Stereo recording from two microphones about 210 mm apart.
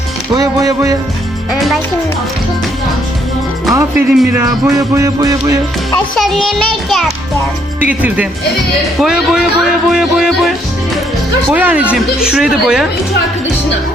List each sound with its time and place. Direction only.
0.3 s speech: 15° right (ahead or behind)
3.8 s speech: 5° right (ahead or behind)
6.1 s speech: centre (ahead or behind)